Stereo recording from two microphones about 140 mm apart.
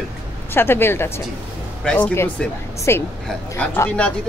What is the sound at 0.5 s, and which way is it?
A woman's voice, 15° left (ahead or behind).